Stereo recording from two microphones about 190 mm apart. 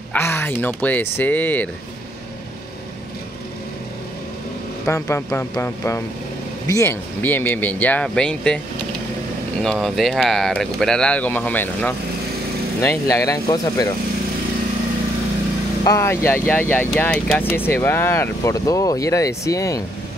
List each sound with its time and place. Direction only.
0.1 s speech: 10° left (ahead or behind)
4.8 s speech: 15° left (ahead or behind)
9.6 s speech: centre (ahead or behind); by 13.8 s 20° left (ahead or behind)
15.8 s speech: 15° left (ahead or behind)